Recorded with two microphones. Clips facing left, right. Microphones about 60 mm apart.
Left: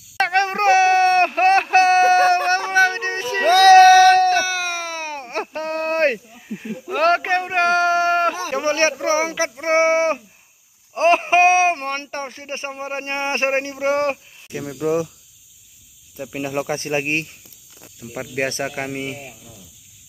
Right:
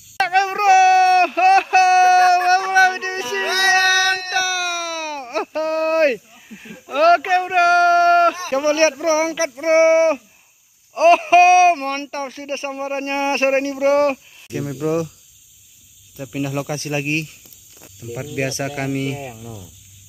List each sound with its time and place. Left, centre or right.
0.2 s a sound: left
11.0 s speech: left
14.1 s speech: centre
16.3 s speech: left
18.7 s speech: centre